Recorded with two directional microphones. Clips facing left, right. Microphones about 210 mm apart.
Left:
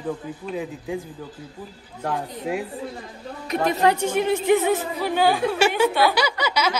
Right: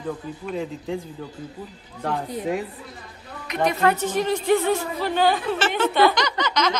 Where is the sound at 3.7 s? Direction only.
20° left (ahead or behind).